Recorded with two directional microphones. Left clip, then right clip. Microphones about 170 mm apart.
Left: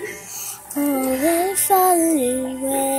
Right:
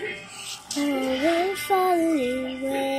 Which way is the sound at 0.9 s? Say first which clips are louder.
Left 4 dB; 15° left (ahead or behind).